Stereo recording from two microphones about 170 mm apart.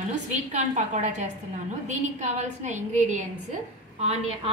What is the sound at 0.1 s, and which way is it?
A woman's voice, 45° right (ahead or behind).